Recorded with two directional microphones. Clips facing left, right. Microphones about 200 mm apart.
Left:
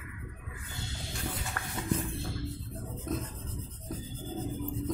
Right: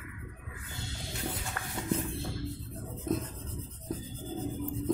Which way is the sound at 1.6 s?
10° right (ahead or behind).